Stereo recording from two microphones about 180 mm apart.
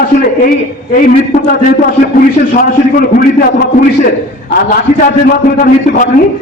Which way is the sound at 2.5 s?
55° left (ahead or behind).